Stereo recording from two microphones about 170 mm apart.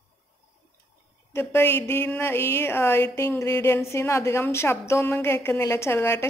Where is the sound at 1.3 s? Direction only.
15° left (ahead or behind).